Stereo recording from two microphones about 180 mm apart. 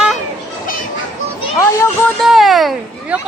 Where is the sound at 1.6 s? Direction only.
15° left (ahead or behind).